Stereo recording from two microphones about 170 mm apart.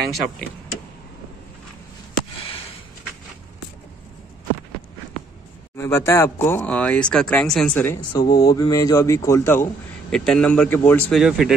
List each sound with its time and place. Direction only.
0.1 s speech: centre (ahead or behind)
5.8 s speech: 15° left (ahead or behind)
10.1 s speech: 5° left (ahead or behind)
11.1 s speech: 5° right (ahead or behind)